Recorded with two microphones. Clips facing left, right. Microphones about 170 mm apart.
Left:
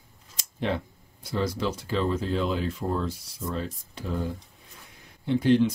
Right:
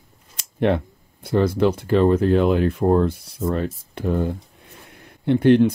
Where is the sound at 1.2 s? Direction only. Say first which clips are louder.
Right 10 dB; 60° right (ahead or behind).